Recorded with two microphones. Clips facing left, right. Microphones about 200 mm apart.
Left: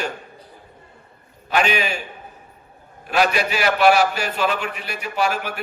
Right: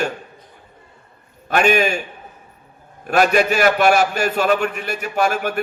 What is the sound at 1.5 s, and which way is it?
Speech, 50° right (ahead or behind).